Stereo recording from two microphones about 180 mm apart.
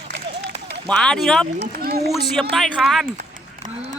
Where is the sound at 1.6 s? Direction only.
60° right (ahead or behind).